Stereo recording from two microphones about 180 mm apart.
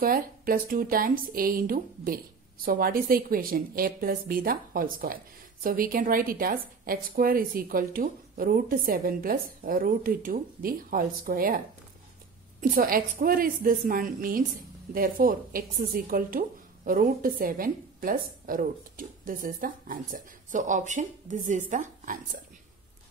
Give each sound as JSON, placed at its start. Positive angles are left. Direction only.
{"t": 0.0, "sound": "a woman's voice", "side_deg": -55}